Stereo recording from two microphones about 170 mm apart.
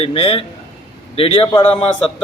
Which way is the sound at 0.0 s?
35° left (ahead or behind).